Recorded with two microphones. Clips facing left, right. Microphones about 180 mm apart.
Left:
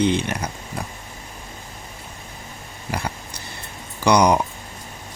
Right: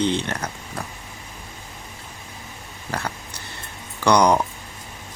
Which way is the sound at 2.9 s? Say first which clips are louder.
Left 1 dB; 10° left (ahead or behind).